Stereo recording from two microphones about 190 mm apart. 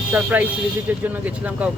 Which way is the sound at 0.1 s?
10° right (ahead or behind).